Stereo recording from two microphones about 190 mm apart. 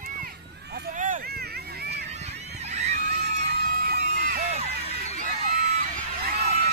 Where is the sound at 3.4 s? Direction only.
55° right (ahead or behind).